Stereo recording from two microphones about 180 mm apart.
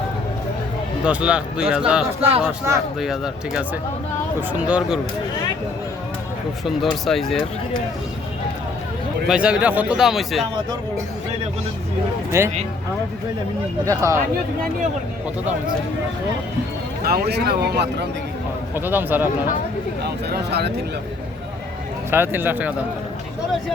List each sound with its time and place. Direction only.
1.0 s speech: 5° right (ahead or behind)
6.7 s speech: centre (ahead or behind)
9.2 s speech: 5° right (ahead or behind)
12.3 s speech: 15° right (ahead or behind)
13.8 s speech: 15° right (ahead or behind)
17.0 s speech: 60° right (ahead or behind)
18.7 s speech: 10° right (ahead or behind)
20.0 s speech: 65° right (ahead or behind)
22.1 s speech: 10° right (ahead or behind)